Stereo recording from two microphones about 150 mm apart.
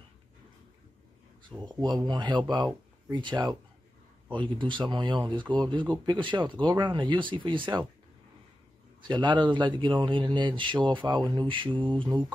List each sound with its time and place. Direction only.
1.6 s speech: 30° right (ahead or behind)
9.0 s speech: 30° right (ahead or behind)